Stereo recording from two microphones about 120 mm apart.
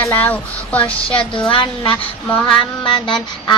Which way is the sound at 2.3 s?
10° left (ahead or behind).